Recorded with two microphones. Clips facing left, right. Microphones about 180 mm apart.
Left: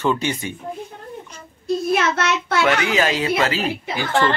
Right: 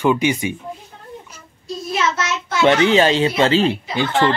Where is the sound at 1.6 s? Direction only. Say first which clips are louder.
Left 3 dB; 55° left (ahead or behind).